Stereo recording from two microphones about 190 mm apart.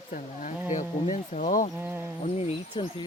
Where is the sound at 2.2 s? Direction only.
35° left (ahead or behind).